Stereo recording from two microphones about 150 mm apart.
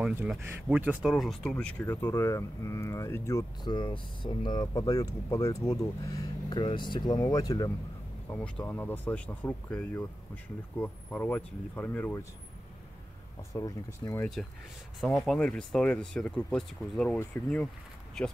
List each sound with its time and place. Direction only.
0.0 s speech: 10° right (ahead or behind); by 3.4 s 20° left (ahead or behind)
3.6 s speech: 35° left (ahead or behind)
8.3 s speech: 10° left (ahead or behind)
13.5 s speech: 25° left (ahead or behind)
15.0 s speech: centre (ahead or behind)